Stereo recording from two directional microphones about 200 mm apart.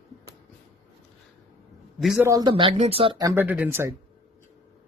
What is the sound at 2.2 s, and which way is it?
Speech, 20° right (ahead or behind).